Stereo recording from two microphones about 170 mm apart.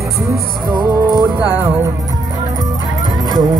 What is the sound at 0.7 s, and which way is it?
Music, 20° right (ahead or behind).